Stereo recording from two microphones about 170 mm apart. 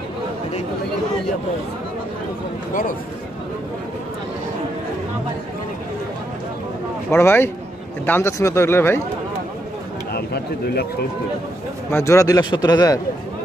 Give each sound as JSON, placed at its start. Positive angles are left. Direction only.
{"t": 7.1, "sound": "speech", "side_deg": 15}
{"t": 10.1, "sound": "a man's voice", "side_deg": 70}
{"t": 11.9, "sound": "a man's voice", "side_deg": 15}